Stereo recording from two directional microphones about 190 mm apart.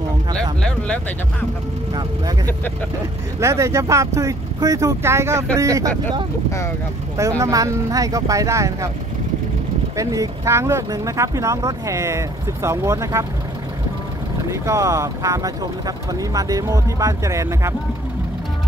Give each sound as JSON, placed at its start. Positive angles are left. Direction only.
{"t": 0.4, "sound": "a sound", "side_deg": 5}
{"t": 3.3, "sound": "speech", "side_deg": -15}
{"t": 7.2, "sound": "speech", "side_deg": -15}
{"t": 9.9, "sound": "speech", "side_deg": -15}
{"t": 14.5, "sound": "speech", "side_deg": -15}